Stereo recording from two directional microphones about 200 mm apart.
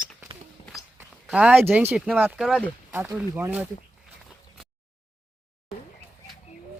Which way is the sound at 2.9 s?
10° right (ahead or behind).